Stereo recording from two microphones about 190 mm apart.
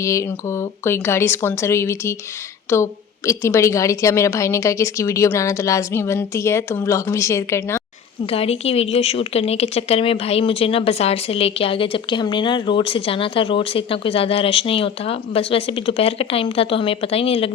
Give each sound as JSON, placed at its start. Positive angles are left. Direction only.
{"t": 0.0, "sound": "a woman's voice", "side_deg": 15}
{"t": 8.3, "sound": "a woman's voice", "side_deg": 30}